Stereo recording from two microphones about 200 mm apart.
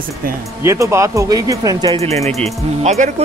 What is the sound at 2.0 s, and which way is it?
Speech, 30° right (ahead or behind).